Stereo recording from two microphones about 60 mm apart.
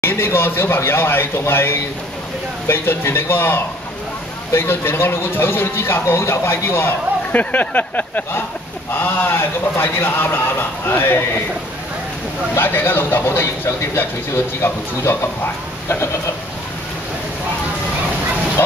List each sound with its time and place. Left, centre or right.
0.0 s a man's voice: left
7.3 s a sound: left
8.9 s speech: left
12.5 s a man's voice: left